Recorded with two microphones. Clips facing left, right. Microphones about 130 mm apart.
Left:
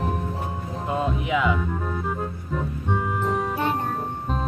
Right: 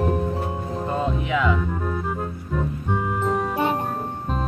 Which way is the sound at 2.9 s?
Centre (ahead or behind).